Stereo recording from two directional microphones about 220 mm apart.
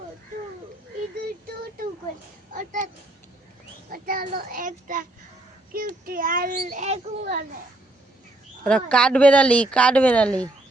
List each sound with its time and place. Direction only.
2.5 s a sound: 35° right (ahead or behind)
3.9 s a child's voice: 40° right (ahead or behind)
8.6 s speech: 5° left (ahead or behind)